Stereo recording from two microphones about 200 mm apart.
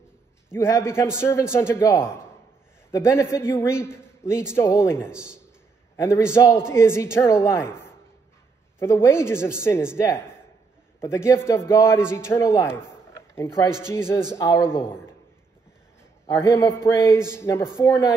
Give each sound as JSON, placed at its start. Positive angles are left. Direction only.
{"t": 0.5, "sound": "a woman's voice", "side_deg": 15}
{"t": 5.1, "sound": "a man's voice", "side_deg": -5}
{"t": 6.3, "sound": "a woman's voice", "side_deg": 15}
{"t": 8.7, "sound": "a woman's voice", "side_deg": 15}
{"t": 16.3, "sound": "a woman's voice", "side_deg": 15}